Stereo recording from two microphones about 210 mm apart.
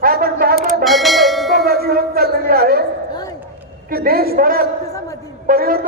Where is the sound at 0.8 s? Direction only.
Centre (ahead or behind).